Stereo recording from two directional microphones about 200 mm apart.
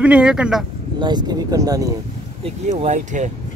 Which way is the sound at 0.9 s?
20° right (ahead or behind).